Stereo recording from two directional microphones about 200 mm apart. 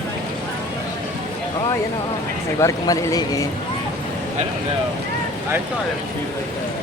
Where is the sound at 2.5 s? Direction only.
15° left (ahead or behind).